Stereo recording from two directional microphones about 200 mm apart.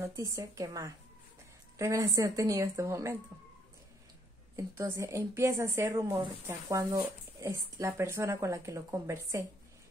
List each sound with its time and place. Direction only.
0.0 s a woman's voice: 15° right (ahead or behind)
4.6 s a woman's voice: 15° right (ahead or behind)